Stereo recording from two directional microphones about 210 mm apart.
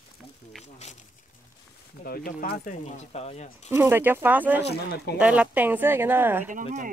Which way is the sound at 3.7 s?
10° right (ahead or behind).